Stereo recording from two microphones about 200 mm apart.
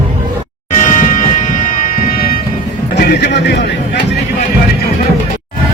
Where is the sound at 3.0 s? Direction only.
55° left (ahead or behind).